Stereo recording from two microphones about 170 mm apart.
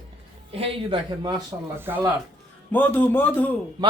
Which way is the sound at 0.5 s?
35° right (ahead or behind).